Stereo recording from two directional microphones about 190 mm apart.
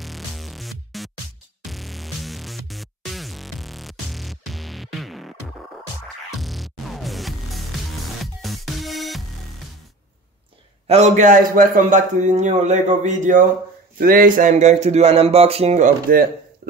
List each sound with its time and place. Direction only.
0.0 s music: centre (ahead or behind)
6.3 s music: centre (ahead or behind)
10.9 s a man's voice: 35° right (ahead or behind)